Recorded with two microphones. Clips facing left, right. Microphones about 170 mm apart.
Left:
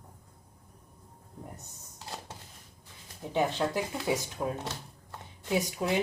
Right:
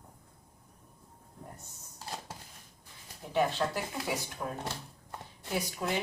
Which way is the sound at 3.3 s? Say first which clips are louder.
Left 1 dB; 20° left (ahead or behind).